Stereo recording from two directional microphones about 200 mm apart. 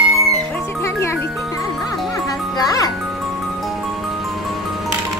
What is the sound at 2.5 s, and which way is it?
Music, 20° left (ahead or behind).